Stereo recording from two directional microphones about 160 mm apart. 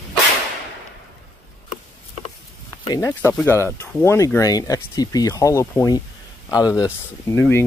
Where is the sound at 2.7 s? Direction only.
20° left (ahead or behind).